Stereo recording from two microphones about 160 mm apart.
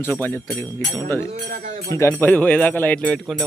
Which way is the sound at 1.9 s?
15° left (ahead or behind).